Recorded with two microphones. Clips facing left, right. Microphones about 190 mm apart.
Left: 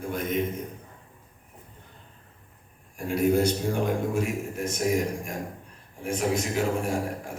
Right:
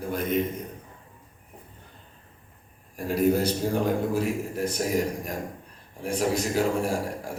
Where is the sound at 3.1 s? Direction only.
35° right (ahead or behind).